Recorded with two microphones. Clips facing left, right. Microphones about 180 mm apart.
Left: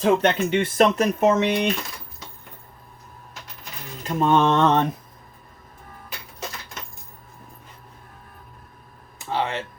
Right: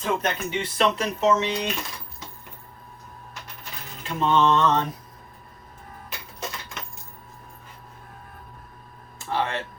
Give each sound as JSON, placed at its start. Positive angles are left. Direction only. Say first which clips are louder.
{"t": 0.0, "sound": "speech", "louder": "left 7 dB", "side_deg": 65}
{"t": 0.8, "sound": "mantra", "louder": "left 4 dB", "side_deg": 50}
{"t": 4.0, "sound": "mantra", "louder": "left 2 dB", "side_deg": 45}
{"t": 9.1, "sound": "a sound", "louder": "left 1 dB", "side_deg": 20}